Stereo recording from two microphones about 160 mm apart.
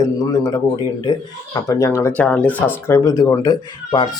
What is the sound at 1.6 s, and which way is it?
Speech, 20° left (ahead or behind).